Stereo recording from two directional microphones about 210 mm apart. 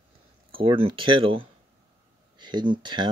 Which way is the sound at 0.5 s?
25° right (ahead or behind).